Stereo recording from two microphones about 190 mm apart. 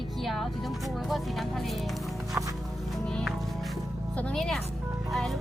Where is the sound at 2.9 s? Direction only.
5° left (ahead or behind).